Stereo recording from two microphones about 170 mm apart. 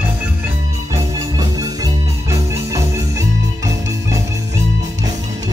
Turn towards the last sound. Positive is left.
turn(degrees=-20)  # may be behind; listen again after turning